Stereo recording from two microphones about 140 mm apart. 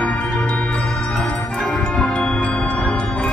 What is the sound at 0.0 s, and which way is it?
Music, 10° left (ahead or behind).